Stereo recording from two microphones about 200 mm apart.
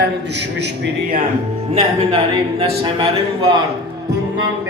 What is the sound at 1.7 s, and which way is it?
A man's voice, 30° right (ahead or behind).